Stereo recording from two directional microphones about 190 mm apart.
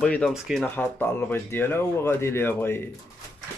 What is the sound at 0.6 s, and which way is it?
Speech, 10° left (ahead or behind).